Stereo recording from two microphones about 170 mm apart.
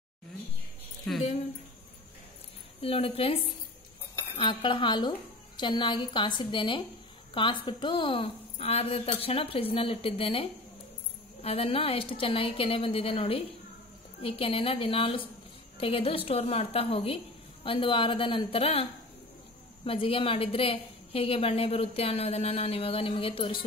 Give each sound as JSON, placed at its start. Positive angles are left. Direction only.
{"t": 1.1, "sound": "a woman's voice", "side_deg": 5}
{"t": 2.8, "sound": "a woman's voice", "side_deg": 35}